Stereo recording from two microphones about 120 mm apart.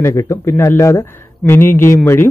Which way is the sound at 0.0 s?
25° left (ahead or behind).